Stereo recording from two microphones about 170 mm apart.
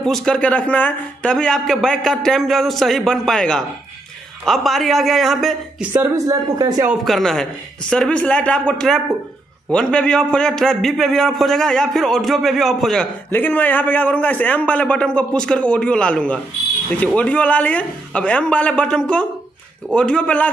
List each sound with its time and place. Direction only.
0.0 s a man's voice: 5° left (ahead or behind)
5.9 s a man's voice: 20° right (ahead or behind)
6.9 s a man's voice: centre (ahead or behind)